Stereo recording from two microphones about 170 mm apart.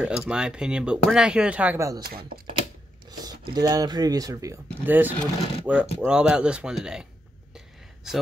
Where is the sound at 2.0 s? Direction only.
65° right (ahead or behind).